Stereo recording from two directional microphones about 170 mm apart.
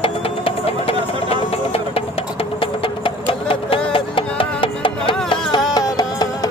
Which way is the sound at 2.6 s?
30° left (ahead or behind).